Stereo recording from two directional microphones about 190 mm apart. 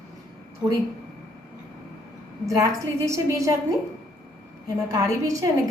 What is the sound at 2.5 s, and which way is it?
A woman's voice, 15° right (ahead or behind).